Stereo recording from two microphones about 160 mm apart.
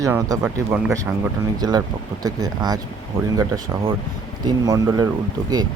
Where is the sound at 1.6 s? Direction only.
25° right (ahead or behind).